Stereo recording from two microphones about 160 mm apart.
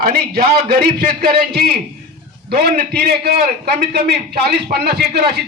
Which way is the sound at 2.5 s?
70° right (ahead or behind).